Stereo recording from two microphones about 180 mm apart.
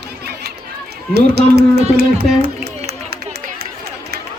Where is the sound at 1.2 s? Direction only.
65° right (ahead or behind).